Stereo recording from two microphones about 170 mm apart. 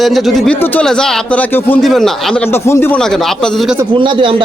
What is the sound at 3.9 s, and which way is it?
Speech, 30° right (ahead or behind).